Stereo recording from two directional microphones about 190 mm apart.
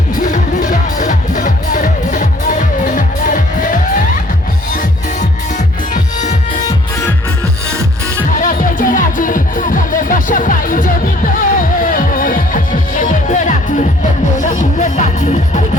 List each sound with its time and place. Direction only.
0.2 s music: 40° left (ahead or behind)
5.5 s music: 40° left (ahead or behind)
8.4 s music: 45° left (ahead or behind)